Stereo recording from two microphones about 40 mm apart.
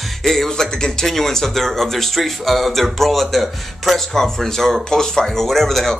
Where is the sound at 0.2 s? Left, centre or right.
Centre.